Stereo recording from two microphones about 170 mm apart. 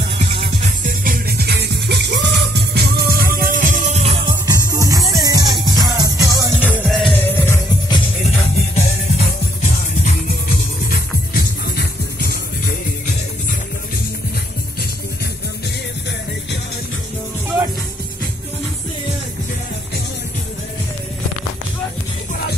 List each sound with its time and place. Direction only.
0.3 s music: 40° right (ahead or behind)
4.5 s music: 20° right (ahead or behind)
6.6 s music: 10° right (ahead or behind)
7.2 s music: 10° left (ahead or behind)
7.9 s music: 35° left (ahead or behind)
10.9 s music: 65° left (ahead or behind)